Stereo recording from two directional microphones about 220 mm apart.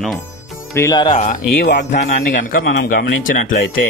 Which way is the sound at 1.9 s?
35° left (ahead or behind).